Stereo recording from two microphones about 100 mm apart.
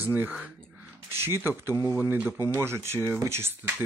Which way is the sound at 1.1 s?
25° right (ahead or behind).